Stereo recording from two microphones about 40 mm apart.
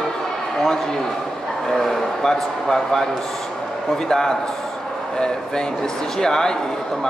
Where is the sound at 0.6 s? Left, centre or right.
Centre.